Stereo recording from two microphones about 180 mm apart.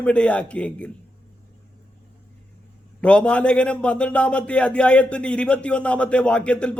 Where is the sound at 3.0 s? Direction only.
5° left (ahead or behind).